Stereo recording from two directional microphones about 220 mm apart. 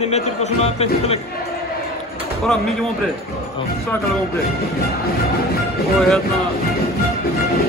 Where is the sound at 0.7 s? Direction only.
30° left (ahead or behind).